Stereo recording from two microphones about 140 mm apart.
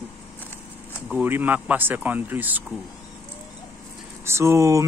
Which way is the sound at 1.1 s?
15° right (ahead or behind).